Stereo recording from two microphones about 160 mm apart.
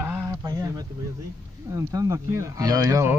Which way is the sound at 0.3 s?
20° right (ahead or behind).